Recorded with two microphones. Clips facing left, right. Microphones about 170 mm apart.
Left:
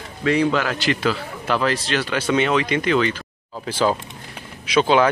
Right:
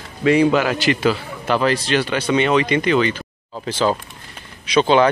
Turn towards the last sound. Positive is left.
turn(degrees=5)  # may be behind; listen again after turning